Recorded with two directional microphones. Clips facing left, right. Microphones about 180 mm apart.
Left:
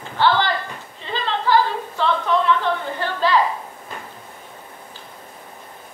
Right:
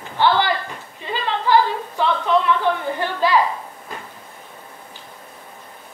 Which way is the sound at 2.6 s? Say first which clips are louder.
Right 2 dB; 15° right (ahead or behind).